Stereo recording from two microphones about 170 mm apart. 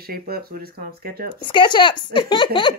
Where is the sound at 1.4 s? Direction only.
30° left (ahead or behind).